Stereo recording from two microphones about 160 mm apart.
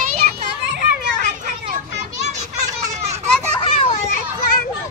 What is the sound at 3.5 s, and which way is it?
Children playing, 35° left (ahead or behind).